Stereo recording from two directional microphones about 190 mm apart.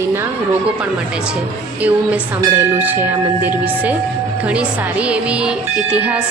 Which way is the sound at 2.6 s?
10° right (ahead or behind).